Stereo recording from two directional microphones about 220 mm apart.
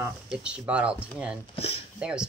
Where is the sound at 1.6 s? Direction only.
25° left (ahead or behind).